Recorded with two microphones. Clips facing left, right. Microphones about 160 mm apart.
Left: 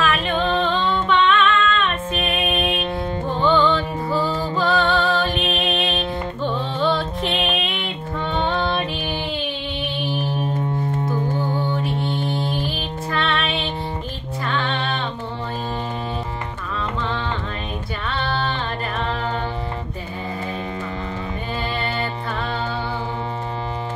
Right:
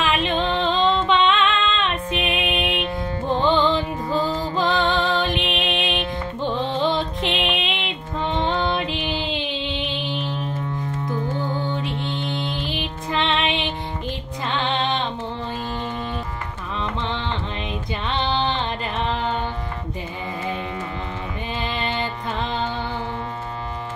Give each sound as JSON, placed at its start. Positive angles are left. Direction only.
{"t": 0.0, "sound": "music", "side_deg": -20}
{"t": 10.6, "sound": "music", "side_deg": 30}
{"t": 12.6, "sound": "music", "side_deg": -20}
{"t": 18.0, "sound": "music", "side_deg": -20}